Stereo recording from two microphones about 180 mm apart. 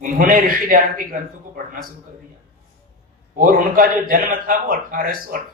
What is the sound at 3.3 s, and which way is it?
A man's voice, 50° right (ahead or behind).